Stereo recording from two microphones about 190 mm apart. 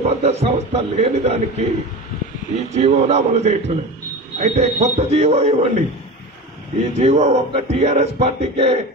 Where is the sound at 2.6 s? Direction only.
35° right (ahead or behind).